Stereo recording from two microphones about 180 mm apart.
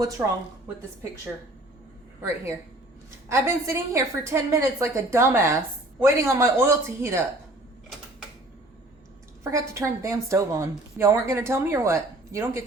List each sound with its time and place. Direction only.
0.2 s a woman's voice: 15° right (ahead or behind)
2.2 s a woman's voice: 15° right (ahead or behind)
9.4 s a woman's voice: 15° right (ahead or behind)